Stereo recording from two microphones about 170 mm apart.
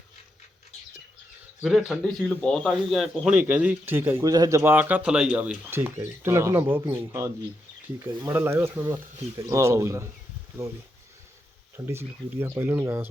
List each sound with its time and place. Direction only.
1.6 s a man's voice: centre (ahead or behind)
11.9 s a man's voice: 15° right (ahead or behind)